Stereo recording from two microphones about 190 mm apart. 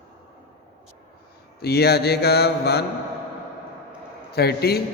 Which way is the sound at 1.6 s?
60° left (ahead or behind).